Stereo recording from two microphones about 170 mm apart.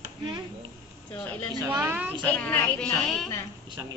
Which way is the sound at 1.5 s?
25° right (ahead or behind).